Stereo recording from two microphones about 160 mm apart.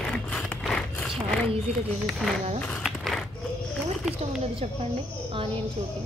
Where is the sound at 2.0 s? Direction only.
Centre (ahead or behind).